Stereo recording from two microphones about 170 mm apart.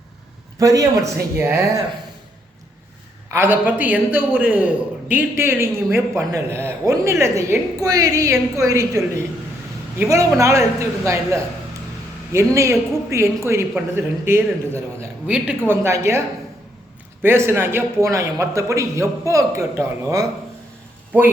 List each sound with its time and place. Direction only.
0.6 s a man's voice: 20° right (ahead or behind)
3.2 s a man's voice: 15° right (ahead or behind)
10.0 s a man's voice: 15° right (ahead or behind)
17.2 s a man's voice: 15° right (ahead or behind)